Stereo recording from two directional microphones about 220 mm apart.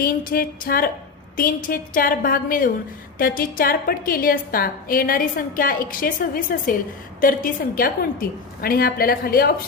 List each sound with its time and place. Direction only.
0.0 s a woman's voice: 40° left (ahead or behind)